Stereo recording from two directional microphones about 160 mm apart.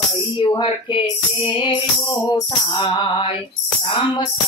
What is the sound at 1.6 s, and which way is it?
Music, 30° left (ahead or behind).